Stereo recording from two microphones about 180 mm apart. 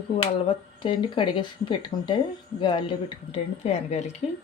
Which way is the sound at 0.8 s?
30° left (ahead or behind).